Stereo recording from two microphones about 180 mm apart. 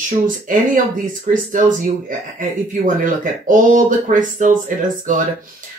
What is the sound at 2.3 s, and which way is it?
Speech, 45° right (ahead or behind).